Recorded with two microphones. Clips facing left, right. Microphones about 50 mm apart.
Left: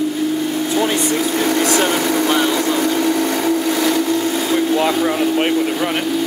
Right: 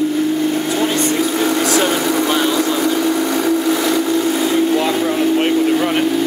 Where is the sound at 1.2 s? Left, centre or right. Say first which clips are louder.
Right 1 dB; centre.